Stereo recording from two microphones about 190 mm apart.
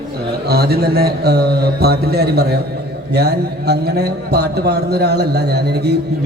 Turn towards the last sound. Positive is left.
turn(degrees=-60)  # may be behind; listen again after turning